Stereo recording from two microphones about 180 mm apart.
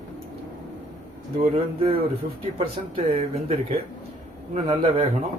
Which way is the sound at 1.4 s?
30° right (ahead or behind).